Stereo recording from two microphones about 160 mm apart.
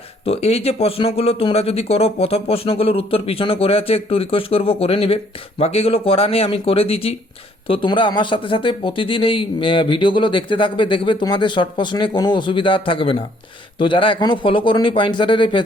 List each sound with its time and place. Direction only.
0.3 s speech: 40° left (ahead or behind)